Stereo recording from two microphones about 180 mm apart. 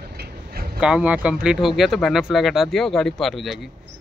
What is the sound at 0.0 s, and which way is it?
Vehicle, 60° right (ahead or behind).